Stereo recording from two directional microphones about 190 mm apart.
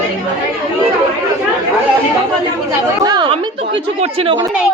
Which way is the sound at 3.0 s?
25° right (ahead or behind).